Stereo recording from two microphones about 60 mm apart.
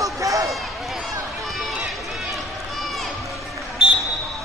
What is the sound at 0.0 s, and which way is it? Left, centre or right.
Run, right.